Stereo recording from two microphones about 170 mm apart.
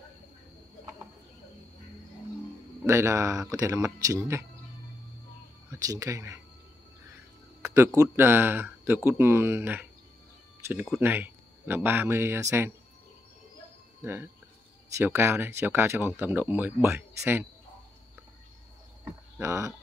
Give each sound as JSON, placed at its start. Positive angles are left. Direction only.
{"t": 2.8, "sound": "speech", "side_deg": -15}
{"t": 5.7, "sound": "speech", "side_deg": -20}
{"t": 7.6, "sound": "a sound", "side_deg": -15}
{"t": 8.0, "sound": "speech", "side_deg": -15}
{"t": 14.0, "sound": "speech", "side_deg": -15}
{"t": 19.0, "sound": "a sound", "side_deg": -15}